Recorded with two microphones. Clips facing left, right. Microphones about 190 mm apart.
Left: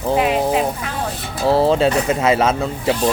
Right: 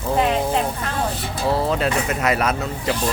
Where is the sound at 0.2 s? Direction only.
5° left (ahead or behind).